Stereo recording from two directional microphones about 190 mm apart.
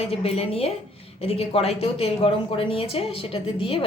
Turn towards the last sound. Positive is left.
turn(degrees=30)  # may be behind; listen again after turning